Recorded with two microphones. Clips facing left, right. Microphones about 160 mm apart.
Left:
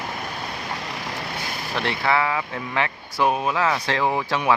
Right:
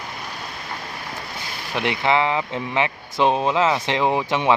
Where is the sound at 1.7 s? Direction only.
15° right (ahead or behind).